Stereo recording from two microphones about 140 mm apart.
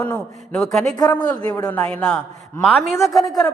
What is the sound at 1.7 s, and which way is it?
A man's voice, 10° left (ahead or behind).